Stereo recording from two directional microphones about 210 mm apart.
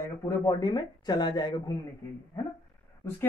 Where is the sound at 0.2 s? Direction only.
15° left (ahead or behind).